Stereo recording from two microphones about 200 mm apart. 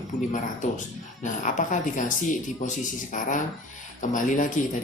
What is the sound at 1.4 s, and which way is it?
Speech, 40° left (ahead or behind).